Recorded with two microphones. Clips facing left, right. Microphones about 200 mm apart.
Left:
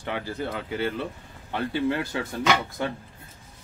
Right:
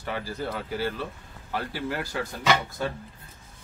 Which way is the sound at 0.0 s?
20° left (ahead or behind).